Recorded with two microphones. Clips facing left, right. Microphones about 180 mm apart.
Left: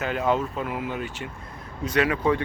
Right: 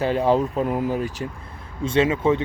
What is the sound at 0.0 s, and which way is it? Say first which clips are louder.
Speech: right 5 dB; 35° right (ahead or behind).